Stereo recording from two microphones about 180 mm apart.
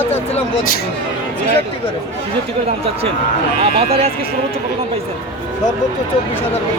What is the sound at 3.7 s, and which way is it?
Speech, 35° right (ahead or behind).